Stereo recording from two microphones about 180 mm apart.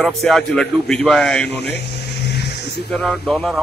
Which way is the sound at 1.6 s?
70° left (ahead or behind).